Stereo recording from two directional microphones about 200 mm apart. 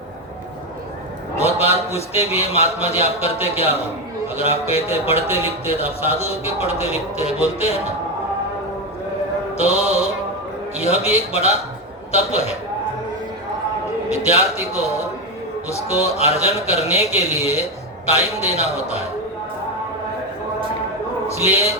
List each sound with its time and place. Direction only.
1.4 s a man's voice: 30° left (ahead or behind)
9.6 s a man's voice: 30° left (ahead or behind)
14.1 s a man's voice: 35° left (ahead or behind)
14.8 s speech: 15° left (ahead or behind)
16.1 s a man's voice: 30° left (ahead or behind)
21.4 s a man's voice: 30° left (ahead or behind)